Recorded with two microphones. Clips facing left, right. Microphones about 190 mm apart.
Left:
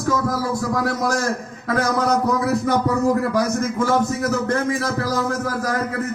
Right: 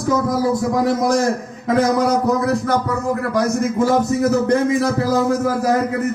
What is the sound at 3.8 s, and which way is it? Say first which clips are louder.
A man's voice: right 4 dB; 20° right (ahead or behind).